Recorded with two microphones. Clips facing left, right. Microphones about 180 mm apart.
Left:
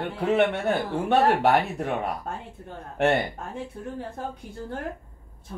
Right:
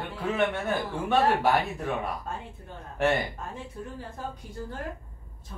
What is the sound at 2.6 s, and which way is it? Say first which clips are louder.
Speech: left 3 dB; 60° left (ahead or behind).